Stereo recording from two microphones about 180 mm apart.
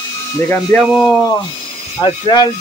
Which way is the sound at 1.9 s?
25° left (ahead or behind).